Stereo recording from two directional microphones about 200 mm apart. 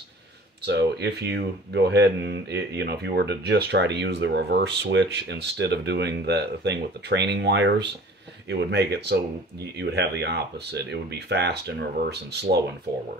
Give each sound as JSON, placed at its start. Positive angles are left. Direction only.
{"t": 0.7, "sound": "speech", "side_deg": -55}